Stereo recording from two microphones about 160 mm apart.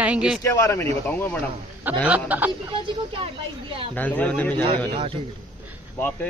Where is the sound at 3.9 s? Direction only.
10° left (ahead or behind).